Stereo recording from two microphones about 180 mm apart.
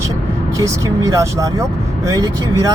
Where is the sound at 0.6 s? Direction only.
20° right (ahead or behind).